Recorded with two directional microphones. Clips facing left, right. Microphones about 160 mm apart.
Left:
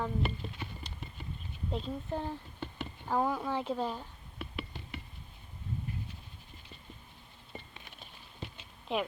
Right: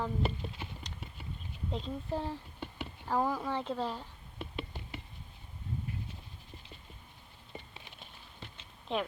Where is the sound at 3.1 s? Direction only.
Centre (ahead or behind).